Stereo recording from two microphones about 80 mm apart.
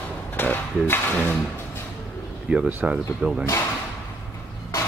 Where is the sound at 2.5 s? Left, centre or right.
Centre.